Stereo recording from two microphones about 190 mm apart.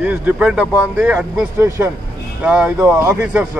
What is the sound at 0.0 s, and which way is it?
Speech, 5° right (ahead or behind).